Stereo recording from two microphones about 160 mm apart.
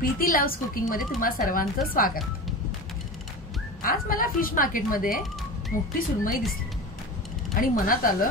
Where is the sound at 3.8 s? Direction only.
60° left (ahead or behind).